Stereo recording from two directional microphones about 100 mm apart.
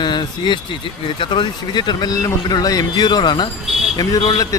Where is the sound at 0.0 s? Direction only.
50° left (ahead or behind).